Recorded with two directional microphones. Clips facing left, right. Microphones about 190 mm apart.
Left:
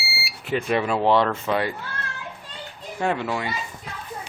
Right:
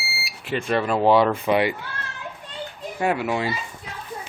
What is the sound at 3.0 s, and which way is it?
Speech, 10° right (ahead or behind).